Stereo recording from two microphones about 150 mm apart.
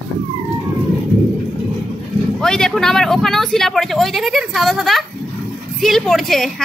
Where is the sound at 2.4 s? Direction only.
5° left (ahead or behind).